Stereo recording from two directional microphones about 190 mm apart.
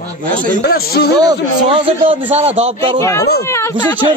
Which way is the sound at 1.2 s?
25° right (ahead or behind).